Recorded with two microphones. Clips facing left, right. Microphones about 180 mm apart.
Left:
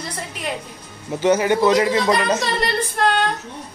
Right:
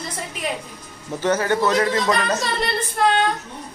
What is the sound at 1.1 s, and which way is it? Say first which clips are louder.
A man's voice: left 3 dB; 10° left (ahead or behind).